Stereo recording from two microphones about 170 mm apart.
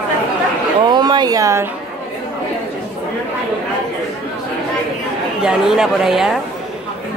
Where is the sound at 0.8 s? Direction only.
25° right (ahead or behind).